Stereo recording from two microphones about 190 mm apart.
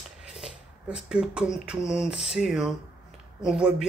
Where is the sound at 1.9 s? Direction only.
Centre (ahead or behind).